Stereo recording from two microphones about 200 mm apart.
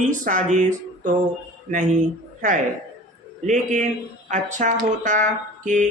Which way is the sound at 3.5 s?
35° right (ahead or behind).